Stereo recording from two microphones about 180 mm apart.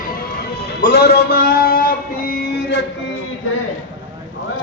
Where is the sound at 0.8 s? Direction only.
60° left (ahead or behind).